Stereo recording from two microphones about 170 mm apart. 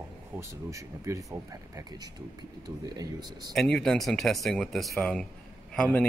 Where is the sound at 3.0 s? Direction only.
20° right (ahead or behind).